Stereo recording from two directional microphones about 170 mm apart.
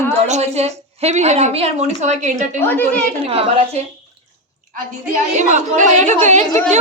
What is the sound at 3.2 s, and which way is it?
Speech, 35° right (ahead or behind).